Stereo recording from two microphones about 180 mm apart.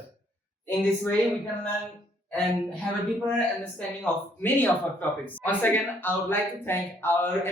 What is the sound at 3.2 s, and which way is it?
Speech, 10° left (ahead or behind).